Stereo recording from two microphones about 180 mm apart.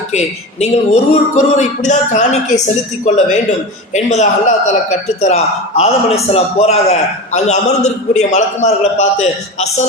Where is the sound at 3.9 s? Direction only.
40° left (ahead or behind).